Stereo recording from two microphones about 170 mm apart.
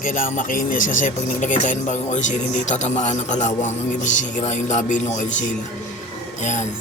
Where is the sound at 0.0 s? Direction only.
50° left (ahead or behind).